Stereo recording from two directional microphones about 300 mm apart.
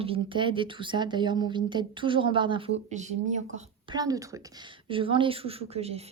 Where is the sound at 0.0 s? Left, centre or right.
Centre.